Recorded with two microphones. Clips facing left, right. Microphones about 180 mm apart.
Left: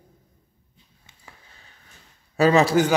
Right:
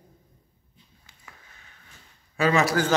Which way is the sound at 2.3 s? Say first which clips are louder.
Left 5 dB; 35° left (ahead or behind).